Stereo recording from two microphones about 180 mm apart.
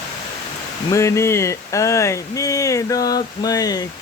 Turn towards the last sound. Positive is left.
turn(degrees=20)  # may be behind; listen again after turning